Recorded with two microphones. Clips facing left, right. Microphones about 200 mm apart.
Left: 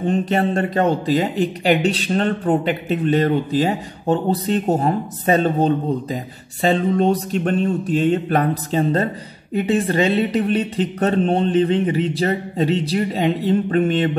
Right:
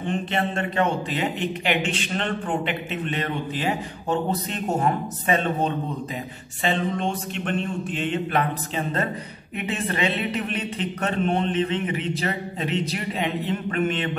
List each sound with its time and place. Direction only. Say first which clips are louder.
0.0 s speech: left 7 dB; 40° left (ahead or behind)